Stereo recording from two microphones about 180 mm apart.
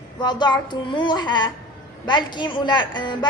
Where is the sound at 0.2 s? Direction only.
25° left (ahead or behind).